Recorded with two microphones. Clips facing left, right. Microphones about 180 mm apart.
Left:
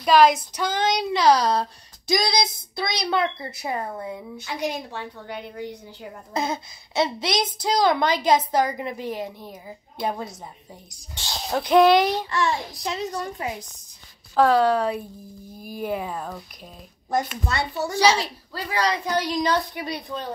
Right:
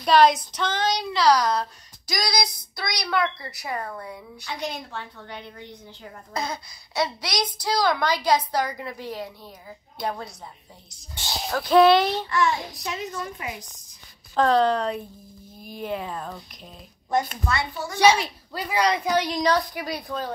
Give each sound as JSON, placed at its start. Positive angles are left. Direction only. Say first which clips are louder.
{"t": 0.0, "sound": "child singing", "louder": "left 1 dB", "side_deg": 5}
{"t": 0.5, "sound": "speech", "louder": "left 2 dB", "side_deg": 10}
{"t": 1.1, "sound": "speech", "louder": "left 1 dB", "side_deg": 25}
{"t": 6.3, "sound": "speech", "louder": "left 4 dB", "side_deg": 25}
{"t": 11.5, "sound": "speech", "louder": "even", "side_deg": 15}
{"t": 12.3, "sound": "a child's voice", "louder": "right 1 dB", "side_deg": 30}
{"t": 14.3, "sound": "speech", "louder": "left 2 dB", "side_deg": 10}
{"t": 17.8, "sound": "a child's voice", "louder": "right 1 dB", "side_deg": 30}
{"t": 18.5, "sound": "a man's voice", "louder": "right 2 dB", "side_deg": -15}
{"t": 19.2, "sound": "a woman's voice", "louder": "even", "side_deg": -5}